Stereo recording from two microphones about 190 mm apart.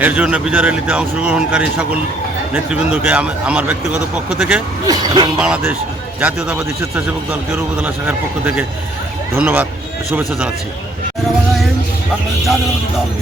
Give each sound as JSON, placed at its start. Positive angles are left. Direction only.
{"t": 0.0, "sound": "a man's voice", "side_deg": -10}
{"t": 4.9, "sound": "speech", "side_deg": -25}
{"t": 5.4, "sound": "a man's voice", "side_deg": -5}